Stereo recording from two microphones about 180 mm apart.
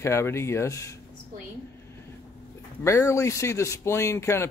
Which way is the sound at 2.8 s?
15° left (ahead or behind).